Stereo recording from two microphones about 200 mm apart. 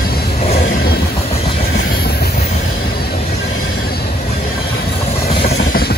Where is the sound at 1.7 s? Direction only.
50° left (ahead or behind).